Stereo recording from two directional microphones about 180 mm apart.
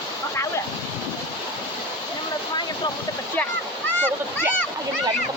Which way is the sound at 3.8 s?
10° left (ahead or behind).